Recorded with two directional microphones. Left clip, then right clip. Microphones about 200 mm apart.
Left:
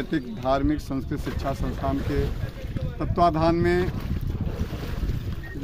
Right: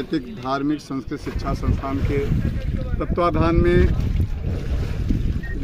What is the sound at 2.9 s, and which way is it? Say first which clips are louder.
Speech: right 1 dB; 30° left (ahead or behind).